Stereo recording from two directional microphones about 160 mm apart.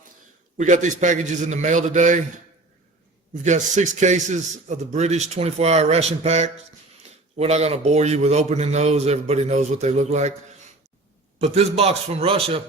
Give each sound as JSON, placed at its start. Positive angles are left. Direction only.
{"t": 0.5, "sound": "a man's voice", "side_deg": -50}
{"t": 3.3, "sound": "a man's voice", "side_deg": -50}
{"t": 11.3, "sound": "a man's voice", "side_deg": -40}